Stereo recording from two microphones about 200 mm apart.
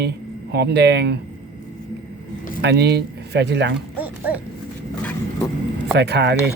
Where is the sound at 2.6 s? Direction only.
60° right (ahead or behind).